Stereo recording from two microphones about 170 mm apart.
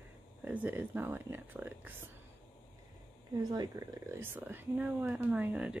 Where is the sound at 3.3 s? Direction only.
20° right (ahead or behind); by 5.7 s 5° right (ahead or behind).